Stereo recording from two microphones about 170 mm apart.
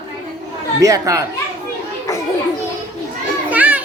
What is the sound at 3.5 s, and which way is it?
Children playing, 10° right (ahead or behind).